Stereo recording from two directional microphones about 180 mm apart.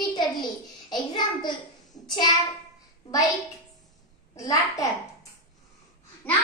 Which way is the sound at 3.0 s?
20° left (ahead or behind).